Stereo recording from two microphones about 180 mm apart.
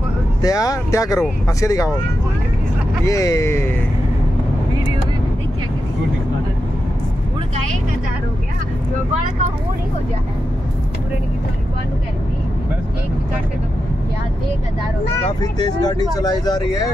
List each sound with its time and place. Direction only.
0.4 s speech: 20° left (ahead or behind)
3.1 s speech: 15° left (ahead or behind)
15.4 s speech: 20° left (ahead or behind)